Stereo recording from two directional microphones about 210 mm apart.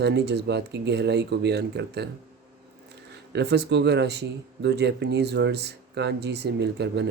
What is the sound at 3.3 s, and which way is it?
Speech, 55° right (ahead or behind).